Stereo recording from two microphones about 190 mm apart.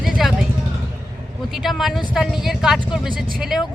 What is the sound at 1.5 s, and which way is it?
Speech, centre (ahead or behind).